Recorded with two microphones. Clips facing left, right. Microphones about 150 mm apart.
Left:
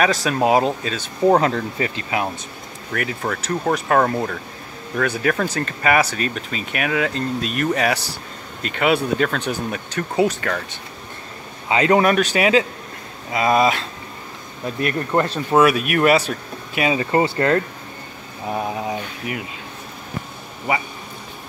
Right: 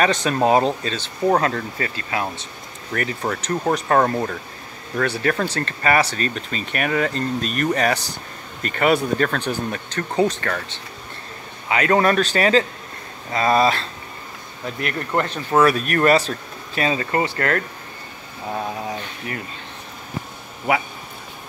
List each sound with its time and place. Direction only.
0.0 s speech: 5° left (ahead or behind)
2.9 s speech: 5° left (ahead or behind)
5.0 s speech: 10° left (ahead or behind)
11.7 s speech: 20° left (ahead or behind)
12.0 s speech: 10° left (ahead or behind)
14.8 s speech: 20° left (ahead or behind)
15.5 s speech: 10° left (ahead or behind)
17.1 s speech: 25° left (ahead or behind)